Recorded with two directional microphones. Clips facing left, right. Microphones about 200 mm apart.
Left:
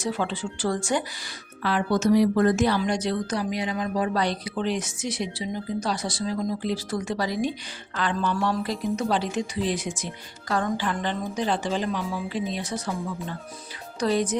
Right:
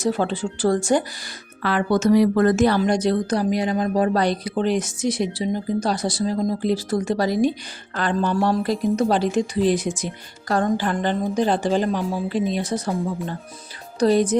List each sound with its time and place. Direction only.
0.0 s speech: 45° right (ahead or behind)
1.6 s speech: 65° right (ahead or behind)
2.6 s speech: 50° right (ahead or behind)